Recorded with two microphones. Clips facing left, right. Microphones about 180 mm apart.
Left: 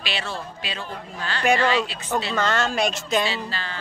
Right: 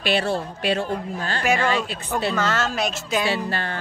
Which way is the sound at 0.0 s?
55° right (ahead or behind).